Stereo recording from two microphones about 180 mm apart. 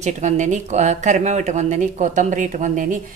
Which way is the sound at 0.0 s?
40° right (ahead or behind).